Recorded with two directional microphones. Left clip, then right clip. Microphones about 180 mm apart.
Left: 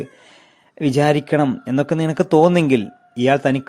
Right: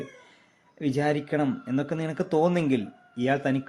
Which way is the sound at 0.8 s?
45° left (ahead or behind).